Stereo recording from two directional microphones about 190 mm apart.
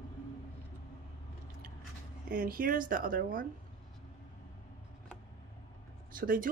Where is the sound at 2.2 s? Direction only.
50° right (ahead or behind).